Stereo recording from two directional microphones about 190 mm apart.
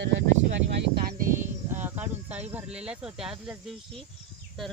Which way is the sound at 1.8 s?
10° right (ahead or behind).